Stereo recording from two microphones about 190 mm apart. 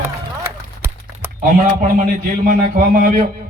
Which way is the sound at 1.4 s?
45° right (ahead or behind).